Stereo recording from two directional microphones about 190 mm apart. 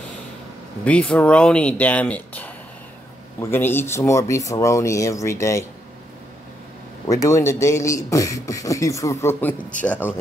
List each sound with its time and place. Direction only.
0.8 s speech: 5° left (ahead or behind)
7.1 s speech: 15° left (ahead or behind)